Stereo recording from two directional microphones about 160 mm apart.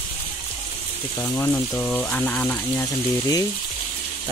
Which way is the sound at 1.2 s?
15° left (ahead or behind).